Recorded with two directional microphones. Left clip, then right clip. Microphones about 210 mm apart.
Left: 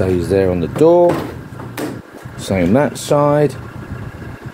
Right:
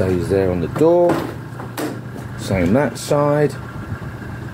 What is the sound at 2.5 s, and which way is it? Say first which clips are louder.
Speech: left 3 dB; 25° left (ahead or behind).